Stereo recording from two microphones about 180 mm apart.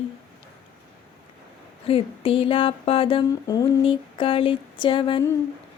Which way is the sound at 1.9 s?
30° left (ahead or behind).